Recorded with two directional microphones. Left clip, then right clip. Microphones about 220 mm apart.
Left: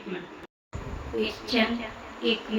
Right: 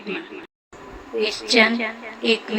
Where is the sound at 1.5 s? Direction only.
30° right (ahead or behind).